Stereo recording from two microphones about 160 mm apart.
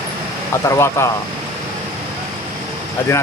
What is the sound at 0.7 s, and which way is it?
Speech, 15° left (ahead or behind).